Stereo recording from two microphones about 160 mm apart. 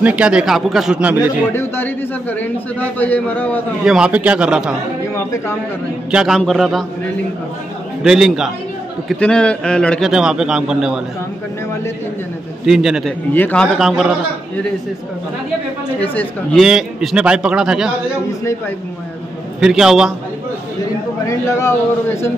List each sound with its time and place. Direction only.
0.0 s a man's voice: 5° right (ahead or behind)
1.5 s a man's voice: 15° left (ahead or behind)
3.8 s a man's voice: 5° right (ahead or behind)
6.1 s a man's voice: centre (ahead or behind)
8.0 s a man's voice: 5° right (ahead or behind)
12.6 s a man's voice: 5° right (ahead or behind)
13.3 s a man's voice: 10° left (ahead or behind)
13.7 s a man's voice: 5° right (ahead or behind)
16.0 s a man's voice: 10° left (ahead or behind)
19.6 s a man's voice: 5° right (ahead or behind)
21.3 s a man's voice: 20° left (ahead or behind)